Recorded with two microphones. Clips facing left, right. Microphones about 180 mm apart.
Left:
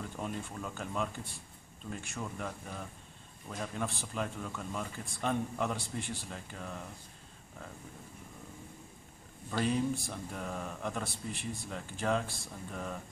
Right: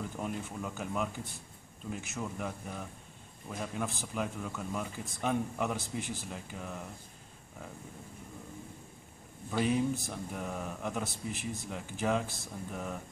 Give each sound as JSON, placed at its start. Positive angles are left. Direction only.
{"t": 0.2, "sound": "a man's voice", "side_deg": -10}
{"t": 9.5, "sound": "a man's voice", "side_deg": -10}